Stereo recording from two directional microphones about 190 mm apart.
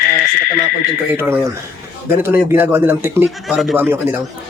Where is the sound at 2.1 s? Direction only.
10° right (ahead or behind).